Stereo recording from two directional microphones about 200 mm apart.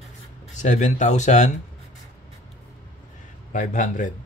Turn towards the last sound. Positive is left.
turn(degrees=40)  # may be behind; listen again after turning